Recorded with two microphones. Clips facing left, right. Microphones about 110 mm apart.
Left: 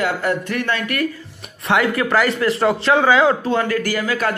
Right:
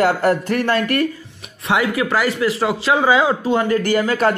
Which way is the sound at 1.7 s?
10° right (ahead or behind).